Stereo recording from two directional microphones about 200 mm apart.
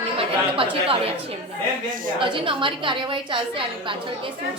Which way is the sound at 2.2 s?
25° right (ahead or behind).